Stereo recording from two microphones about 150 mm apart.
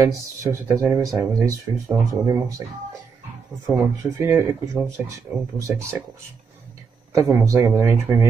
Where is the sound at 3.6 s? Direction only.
15° right (ahead or behind).